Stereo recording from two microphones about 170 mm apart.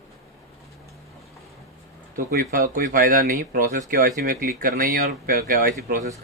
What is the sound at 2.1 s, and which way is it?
Speech, 55° right (ahead or behind).